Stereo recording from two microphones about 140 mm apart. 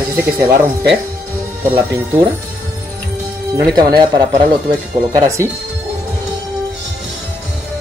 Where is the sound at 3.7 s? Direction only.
30° right (ahead or behind).